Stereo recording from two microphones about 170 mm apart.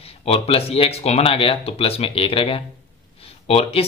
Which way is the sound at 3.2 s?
35° left (ahead or behind).